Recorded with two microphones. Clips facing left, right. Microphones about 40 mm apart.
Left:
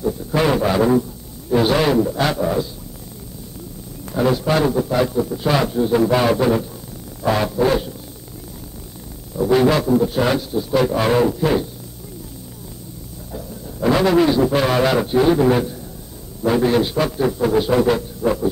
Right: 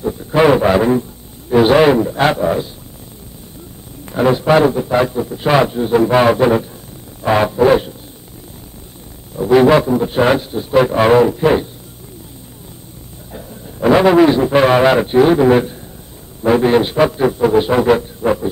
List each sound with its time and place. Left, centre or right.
0.0 s a man's voice: right
4.0 s a man's voice: right
9.4 s a man's voice: right
13.3 s a man's voice: right